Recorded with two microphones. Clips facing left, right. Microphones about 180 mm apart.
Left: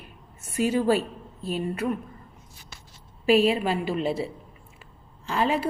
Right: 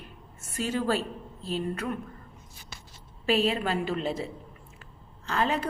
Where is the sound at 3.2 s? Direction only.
10° left (ahead or behind).